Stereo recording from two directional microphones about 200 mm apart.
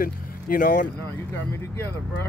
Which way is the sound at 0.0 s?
45° left (ahead or behind).